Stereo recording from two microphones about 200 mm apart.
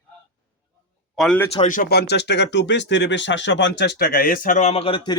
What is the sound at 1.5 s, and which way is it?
Speech, 40° left (ahead or behind).